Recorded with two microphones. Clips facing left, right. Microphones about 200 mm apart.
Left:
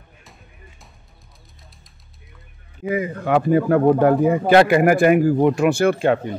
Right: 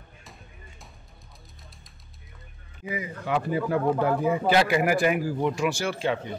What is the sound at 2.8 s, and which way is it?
Speech, 55° left (ahead or behind).